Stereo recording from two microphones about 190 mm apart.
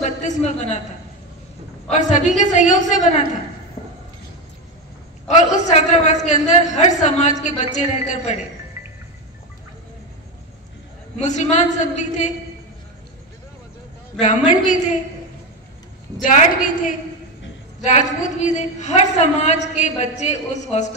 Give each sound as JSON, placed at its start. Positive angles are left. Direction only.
{"t": 0.0, "sound": "a man's voice", "side_deg": 40}
{"t": 1.9, "sound": "a man's voice", "side_deg": 40}
{"t": 5.3, "sound": "a man's voice", "side_deg": 40}
{"t": 11.1, "sound": "a man's voice", "side_deg": 35}
{"t": 14.2, "sound": "a man's voice", "side_deg": 40}
{"t": 16.3, "sound": "a woman's voice", "side_deg": 45}